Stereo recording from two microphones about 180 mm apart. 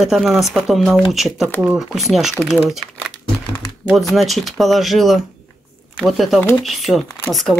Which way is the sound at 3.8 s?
Centre (ahead or behind).